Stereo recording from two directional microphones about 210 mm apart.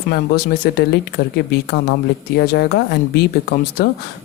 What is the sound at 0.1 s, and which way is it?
Speech, 50° left (ahead or behind).